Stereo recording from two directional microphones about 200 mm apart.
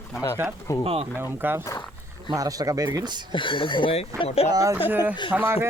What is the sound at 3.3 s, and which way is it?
Speech, 25° left (ahead or behind).